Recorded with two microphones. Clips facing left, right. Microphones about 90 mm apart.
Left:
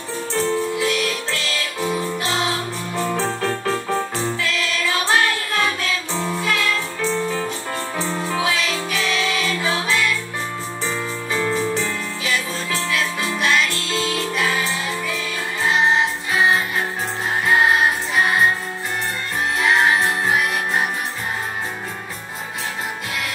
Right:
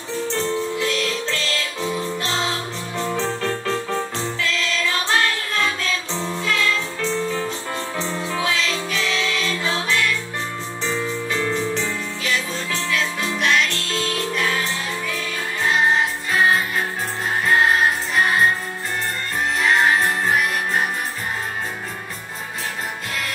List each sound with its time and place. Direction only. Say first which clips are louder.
0.1 s music: left 1 dB; 15° left (ahead or behind)
19.6 s music: even; 10° left (ahead or behind)